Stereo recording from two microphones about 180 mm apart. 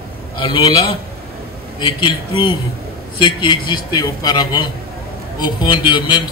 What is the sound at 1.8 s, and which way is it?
A man's voice, 25° left (ahead or behind).